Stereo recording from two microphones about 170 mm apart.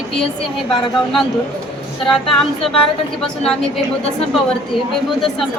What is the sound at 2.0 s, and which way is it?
Speech, centre (ahead or behind).